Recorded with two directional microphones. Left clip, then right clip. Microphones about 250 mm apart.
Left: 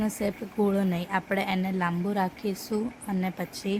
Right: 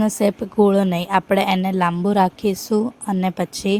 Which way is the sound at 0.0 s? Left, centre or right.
Right.